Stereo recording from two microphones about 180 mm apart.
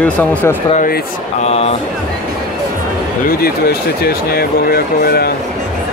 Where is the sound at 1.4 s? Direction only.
35° left (ahead or behind).